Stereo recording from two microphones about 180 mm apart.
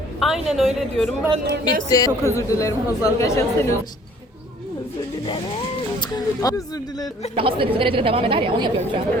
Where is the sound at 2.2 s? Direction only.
15° left (ahead or behind).